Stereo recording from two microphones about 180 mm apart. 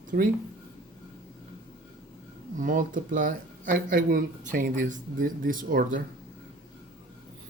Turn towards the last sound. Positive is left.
turn(degrees=-50)  # may be behind; listen again after turning